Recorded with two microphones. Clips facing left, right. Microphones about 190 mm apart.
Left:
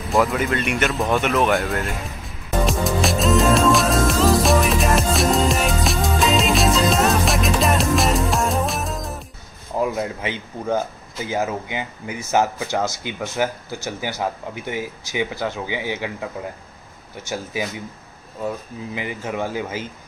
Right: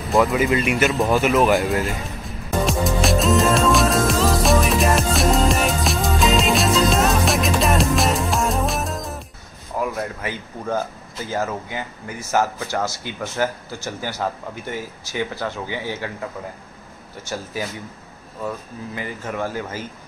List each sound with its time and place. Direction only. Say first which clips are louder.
0.1 s a sound: right 2 dB; centre (ahead or behind)
9.8 s speech: left 3 dB; 20° left (ahead or behind)
18.9 s speech: left 1 dB; 15° left (ahead or behind)